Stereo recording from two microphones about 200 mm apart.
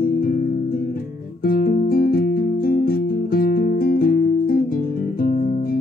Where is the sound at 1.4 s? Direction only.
45° left (ahead or behind).